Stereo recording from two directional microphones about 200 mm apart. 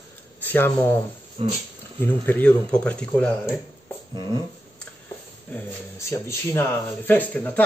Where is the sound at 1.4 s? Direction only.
30° right (ahead or behind).